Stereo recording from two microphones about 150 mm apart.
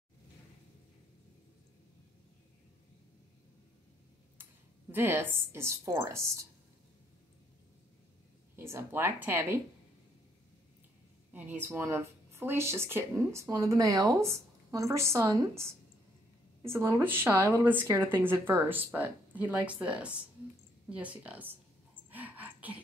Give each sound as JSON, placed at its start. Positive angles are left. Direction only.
{"t": 4.9, "sound": "a woman's voice", "side_deg": -15}
{"t": 8.5, "sound": "a woman's voice", "side_deg": -15}
{"t": 11.6, "sound": "a woman's voice", "side_deg": -15}
{"t": 22.1, "sound": "a sound", "side_deg": -10}